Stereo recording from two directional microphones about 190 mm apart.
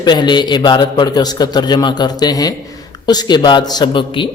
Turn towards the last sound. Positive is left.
turn(degrees=25)  # may be behind; listen again after turning